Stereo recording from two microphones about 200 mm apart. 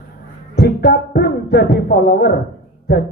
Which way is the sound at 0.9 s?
55° left (ahead or behind).